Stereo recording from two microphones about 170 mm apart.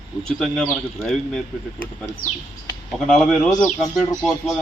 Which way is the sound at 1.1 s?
5° left (ahead or behind).